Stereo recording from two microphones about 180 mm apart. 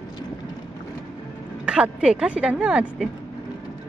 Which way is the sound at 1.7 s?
5° right (ahead or behind).